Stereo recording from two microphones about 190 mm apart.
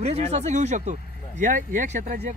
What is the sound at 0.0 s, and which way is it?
Speech, 35° right (ahead or behind).